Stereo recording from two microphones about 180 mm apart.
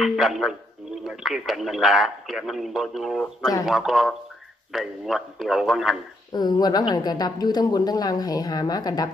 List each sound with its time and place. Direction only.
0.0 s a man's voice: centre (ahead or behind)
6.3 s a woman's voice: 25° left (ahead or behind)